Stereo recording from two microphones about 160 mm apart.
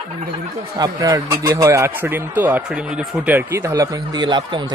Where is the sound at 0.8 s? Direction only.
20° right (ahead or behind).